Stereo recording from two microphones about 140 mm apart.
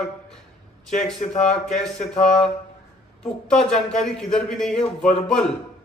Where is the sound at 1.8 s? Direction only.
5° left (ahead or behind).